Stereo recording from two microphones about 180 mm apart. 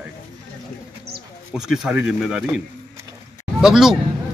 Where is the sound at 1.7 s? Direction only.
5° right (ahead or behind).